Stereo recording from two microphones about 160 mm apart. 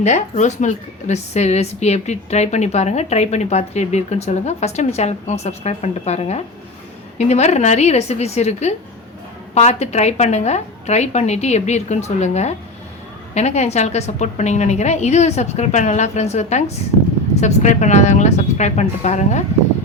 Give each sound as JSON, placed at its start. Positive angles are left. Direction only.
{"t": 0.0, "sound": "speech", "side_deg": 45}